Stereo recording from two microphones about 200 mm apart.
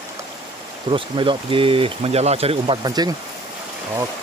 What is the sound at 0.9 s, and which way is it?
Speech, 25° right (ahead or behind).